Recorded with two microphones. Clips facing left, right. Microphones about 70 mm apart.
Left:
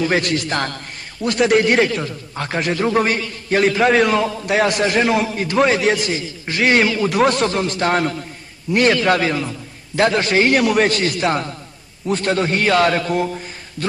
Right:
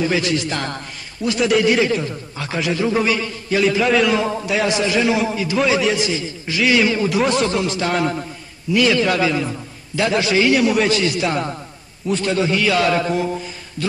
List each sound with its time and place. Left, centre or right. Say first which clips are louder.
0.1 s a man's voice: left 1 dB; left
4.2 s a man's voice: even; right
4.5 s a man's voice: left 3 dB; left